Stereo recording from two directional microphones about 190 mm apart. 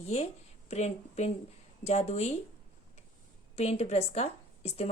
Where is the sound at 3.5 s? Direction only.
35° left (ahead or behind).